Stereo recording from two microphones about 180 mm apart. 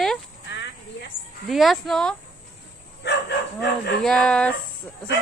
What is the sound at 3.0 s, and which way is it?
Bow-wow, 70° left (ahead or behind).